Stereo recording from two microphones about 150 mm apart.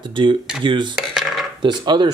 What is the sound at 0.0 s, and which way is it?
Speech, 35° right (ahead or behind).